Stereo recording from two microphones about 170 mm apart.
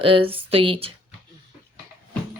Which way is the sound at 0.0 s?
35° right (ahead or behind).